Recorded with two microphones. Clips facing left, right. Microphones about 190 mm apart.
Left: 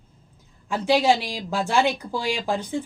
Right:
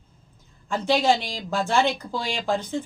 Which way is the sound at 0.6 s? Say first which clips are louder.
Left 1 dB; 10° left (ahead or behind).